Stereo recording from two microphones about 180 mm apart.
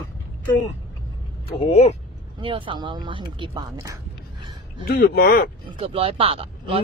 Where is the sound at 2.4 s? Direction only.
30° right (ahead or behind).